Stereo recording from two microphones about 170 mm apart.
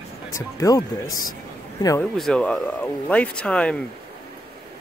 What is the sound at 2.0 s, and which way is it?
Speech, 5° left (ahead or behind).